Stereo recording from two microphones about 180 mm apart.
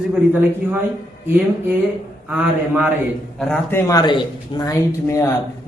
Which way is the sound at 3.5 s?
15° left (ahead or behind).